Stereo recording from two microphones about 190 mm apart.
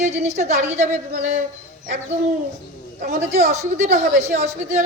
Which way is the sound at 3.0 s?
55° right (ahead or behind).